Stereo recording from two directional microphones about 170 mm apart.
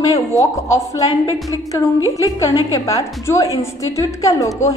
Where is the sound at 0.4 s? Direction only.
20° left (ahead or behind).